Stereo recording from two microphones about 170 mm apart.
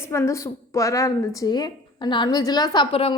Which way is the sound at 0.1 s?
15° left (ahead or behind).